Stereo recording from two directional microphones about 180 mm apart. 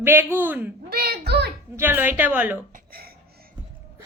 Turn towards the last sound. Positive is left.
turn(degrees=-55)  # may be behind; listen again after turning